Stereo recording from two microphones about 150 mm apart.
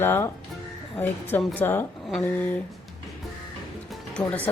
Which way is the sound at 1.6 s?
15° left (ahead or behind).